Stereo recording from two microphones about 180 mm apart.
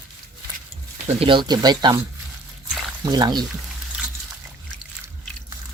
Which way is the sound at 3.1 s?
20° right (ahead or behind).